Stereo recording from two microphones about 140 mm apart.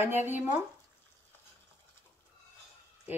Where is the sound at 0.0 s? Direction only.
15° right (ahead or behind).